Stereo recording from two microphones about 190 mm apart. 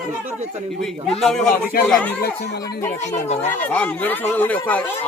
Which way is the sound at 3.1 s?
35° left (ahead or behind).